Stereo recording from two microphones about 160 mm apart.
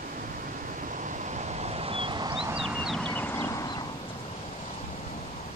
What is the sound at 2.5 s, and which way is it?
Horse, centre (ahead or behind).